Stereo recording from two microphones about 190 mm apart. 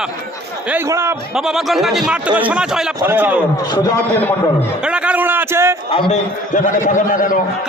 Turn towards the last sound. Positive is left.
turn(degrees=45)  # may be behind; listen again after turning